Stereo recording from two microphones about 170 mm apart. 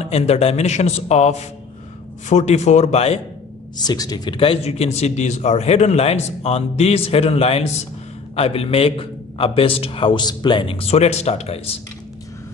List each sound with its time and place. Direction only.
0.0 s a man's voice: 35° left (ahead or behind)
3.8 s a man's voice: 20° left (ahead or behind); by 11.8 s 35° left (ahead or behind)